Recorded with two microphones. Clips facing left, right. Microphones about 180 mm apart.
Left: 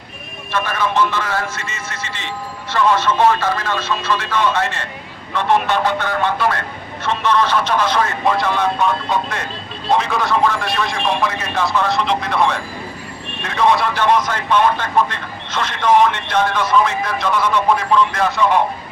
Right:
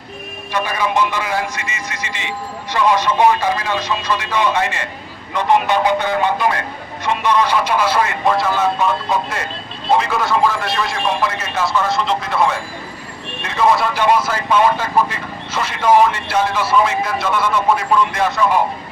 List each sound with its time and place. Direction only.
0.5 s speech: 15° right (ahead or behind)
13.6 s speech: 5° right (ahead or behind)